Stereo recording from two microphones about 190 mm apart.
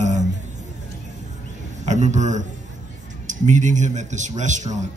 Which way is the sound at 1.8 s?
40° right (ahead or behind).